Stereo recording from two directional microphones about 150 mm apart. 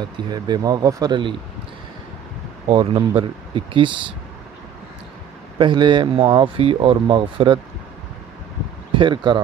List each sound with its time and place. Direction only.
0.0 s speech: 25° right (ahead or behind)
2.7 s speech: 40° right (ahead or behind)
5.6 s speech: 30° right (ahead or behind)
8.9 s speech: 30° right (ahead or behind)